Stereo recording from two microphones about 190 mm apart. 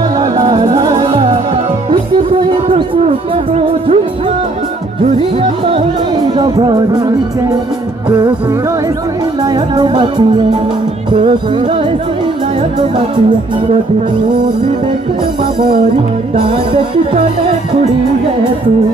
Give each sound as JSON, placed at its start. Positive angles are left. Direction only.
{"t": 0.2, "sound": "music", "side_deg": -25}
{"t": 2.7, "sound": "music", "side_deg": -30}
{"t": 5.4, "sound": "music", "side_deg": -30}
{"t": 9.8, "sound": "music", "side_deg": -25}
{"t": 16.3, "sound": "music", "side_deg": -25}